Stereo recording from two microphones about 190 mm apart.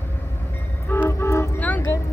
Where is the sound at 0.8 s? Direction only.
10° left (ahead or behind).